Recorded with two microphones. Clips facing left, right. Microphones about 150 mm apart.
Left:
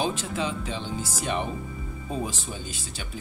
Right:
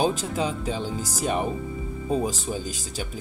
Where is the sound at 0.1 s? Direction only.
40° right (ahead or behind).